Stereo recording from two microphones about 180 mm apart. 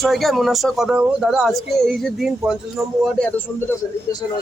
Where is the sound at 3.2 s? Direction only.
15° left (ahead or behind).